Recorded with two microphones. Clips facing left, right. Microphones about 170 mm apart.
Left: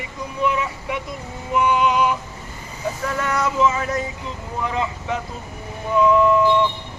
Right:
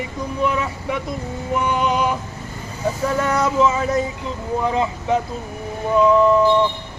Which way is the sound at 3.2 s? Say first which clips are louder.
Right 2 dB; 35° right (ahead or behind).